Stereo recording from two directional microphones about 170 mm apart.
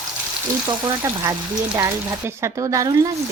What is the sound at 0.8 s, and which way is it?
Speech, 20° right (ahead or behind).